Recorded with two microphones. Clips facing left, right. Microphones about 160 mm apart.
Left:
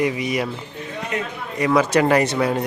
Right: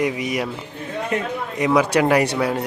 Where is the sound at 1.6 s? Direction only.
15° right (ahead or behind).